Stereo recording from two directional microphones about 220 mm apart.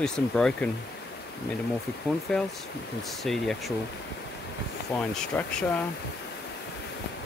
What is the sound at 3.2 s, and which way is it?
Speech, centre (ahead or behind).